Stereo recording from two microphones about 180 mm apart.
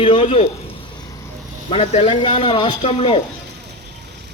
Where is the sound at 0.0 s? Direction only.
30° left (ahead or behind).